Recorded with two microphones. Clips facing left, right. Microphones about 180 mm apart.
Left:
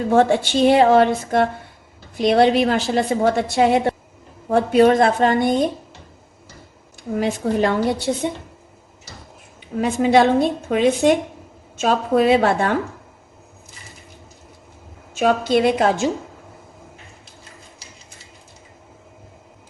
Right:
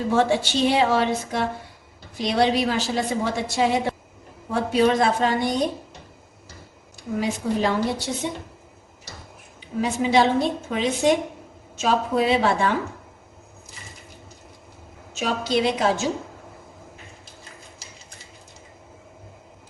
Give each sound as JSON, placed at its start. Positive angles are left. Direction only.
{"t": 0.1, "sound": "a woman's voice", "side_deg": 55}
{"t": 7.2, "sound": "a woman's voice", "side_deg": 55}
{"t": 9.8, "sound": "a woman's voice", "side_deg": 55}
{"t": 15.1, "sound": "a woman's voice", "side_deg": 55}